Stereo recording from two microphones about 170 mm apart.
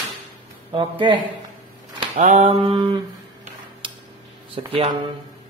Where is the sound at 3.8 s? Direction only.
30° right (ahead or behind).